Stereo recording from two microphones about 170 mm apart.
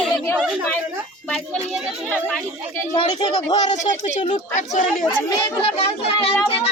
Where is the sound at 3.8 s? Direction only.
45° left (ahead or behind).